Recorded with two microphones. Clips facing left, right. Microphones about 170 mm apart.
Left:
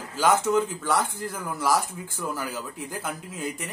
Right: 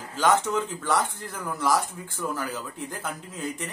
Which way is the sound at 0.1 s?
5° left (ahead or behind).